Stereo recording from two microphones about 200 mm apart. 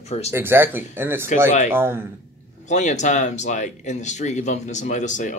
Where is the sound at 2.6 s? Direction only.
35° left (ahead or behind).